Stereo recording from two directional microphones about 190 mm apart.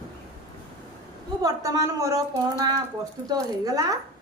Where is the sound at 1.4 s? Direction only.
20° right (ahead or behind).